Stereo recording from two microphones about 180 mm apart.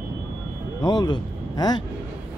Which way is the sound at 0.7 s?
25° left (ahead or behind).